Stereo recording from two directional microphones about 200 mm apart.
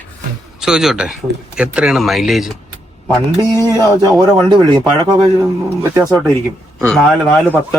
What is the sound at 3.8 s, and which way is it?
Speech, 20° right (ahead or behind).